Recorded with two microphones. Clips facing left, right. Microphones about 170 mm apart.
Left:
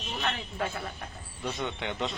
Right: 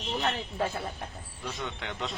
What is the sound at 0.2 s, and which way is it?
Speech, 35° right (ahead or behind).